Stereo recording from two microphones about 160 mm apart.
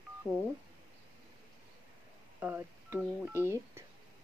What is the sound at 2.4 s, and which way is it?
Speech, 10° right (ahead or behind).